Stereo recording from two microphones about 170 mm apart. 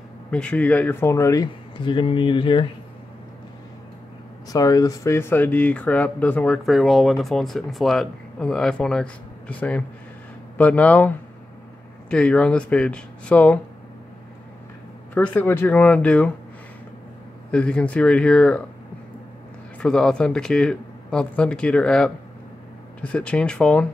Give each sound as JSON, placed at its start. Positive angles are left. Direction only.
{"t": 0.3, "sound": "speech", "side_deg": 5}
{"t": 4.5, "sound": "speech", "side_deg": 20}
{"t": 15.1, "sound": "speech", "side_deg": 10}
{"t": 17.5, "sound": "speech", "side_deg": 5}
{"t": 19.8, "sound": "speech", "side_deg": 5}